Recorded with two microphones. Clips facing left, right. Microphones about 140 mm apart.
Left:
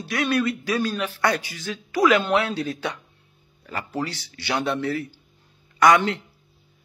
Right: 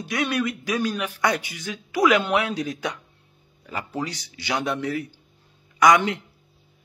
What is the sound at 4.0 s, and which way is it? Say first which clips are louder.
Speech: left 3 dB; 15° right (ahead or behind).